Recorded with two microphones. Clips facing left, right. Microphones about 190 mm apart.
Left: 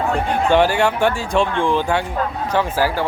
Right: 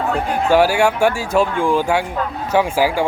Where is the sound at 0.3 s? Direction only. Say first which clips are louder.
Right 1 dB; 5° right (ahead or behind).